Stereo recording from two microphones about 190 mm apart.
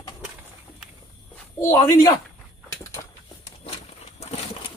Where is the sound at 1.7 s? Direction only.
15° left (ahead or behind).